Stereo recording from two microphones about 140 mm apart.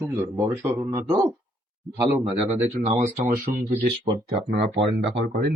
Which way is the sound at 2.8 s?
55° right (ahead or behind).